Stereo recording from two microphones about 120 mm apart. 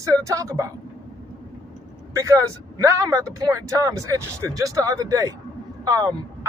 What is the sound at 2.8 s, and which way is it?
Speech, 25° right (ahead or behind).